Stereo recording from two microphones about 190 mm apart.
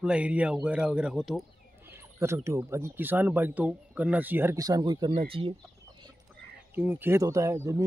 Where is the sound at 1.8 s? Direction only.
15° right (ahead or behind); by 5.6 s 30° right (ahead or behind).